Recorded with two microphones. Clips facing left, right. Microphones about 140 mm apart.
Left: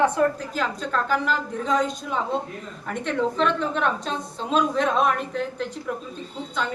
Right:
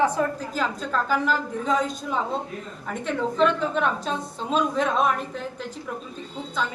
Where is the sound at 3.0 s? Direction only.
5° right (ahead or behind).